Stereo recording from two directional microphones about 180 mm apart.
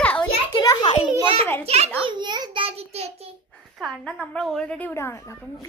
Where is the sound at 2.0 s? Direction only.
25° right (ahead or behind).